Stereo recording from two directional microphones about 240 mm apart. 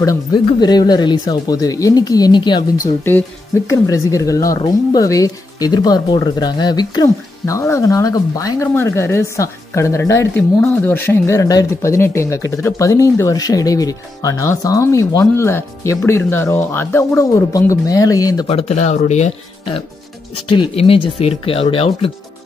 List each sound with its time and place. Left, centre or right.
0.0 s speech: centre